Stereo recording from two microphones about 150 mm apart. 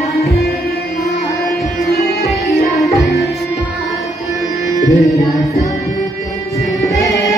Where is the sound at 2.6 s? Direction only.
Centre (ahead or behind).